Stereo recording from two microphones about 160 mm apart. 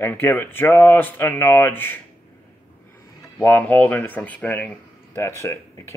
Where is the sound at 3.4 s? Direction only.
10° left (ahead or behind).